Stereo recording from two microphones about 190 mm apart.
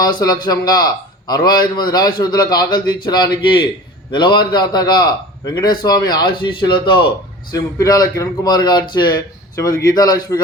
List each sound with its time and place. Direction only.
0.0 s a man's voice: 20° left (ahead or behind)